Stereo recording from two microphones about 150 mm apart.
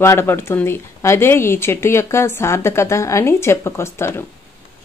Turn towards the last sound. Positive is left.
turn(degrees=15)  # may be behind; listen again after turning